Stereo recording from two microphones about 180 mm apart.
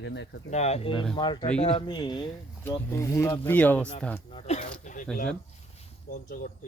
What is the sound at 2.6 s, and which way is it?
Speech, 15° left (ahead or behind).